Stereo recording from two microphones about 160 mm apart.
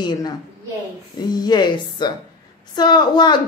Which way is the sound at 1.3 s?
25° left (ahead or behind).